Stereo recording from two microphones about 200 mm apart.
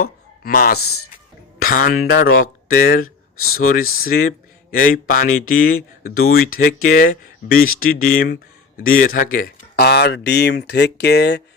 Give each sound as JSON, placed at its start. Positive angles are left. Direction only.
{"t": 0.0, "sound": "speech", "side_deg": 45}